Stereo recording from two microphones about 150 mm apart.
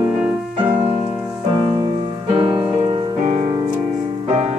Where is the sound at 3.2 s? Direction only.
50° right (ahead or behind).